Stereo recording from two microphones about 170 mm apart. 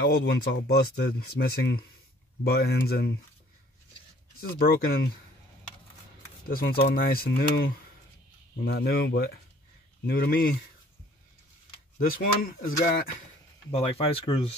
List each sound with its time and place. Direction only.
0.0 s speech: 75° left (ahead or behind)
4.4 s speech: 60° left (ahead or behind)
6.4 s speech: 60° left (ahead or behind)
12.1 s speech: 55° left (ahead or behind)
13.7 s speech: 35° left (ahead or behind)